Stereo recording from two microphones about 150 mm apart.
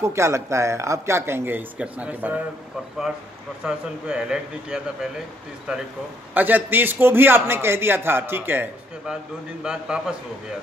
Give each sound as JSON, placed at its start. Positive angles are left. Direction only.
{"t": 0.0, "sound": "a man's voice", "side_deg": -20}
{"t": 3.6, "sound": "speech", "side_deg": -5}
{"t": 6.3, "sound": "a man's voice", "side_deg": -10}